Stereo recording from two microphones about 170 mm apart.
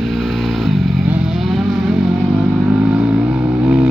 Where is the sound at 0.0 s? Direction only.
Centre (ahead or behind).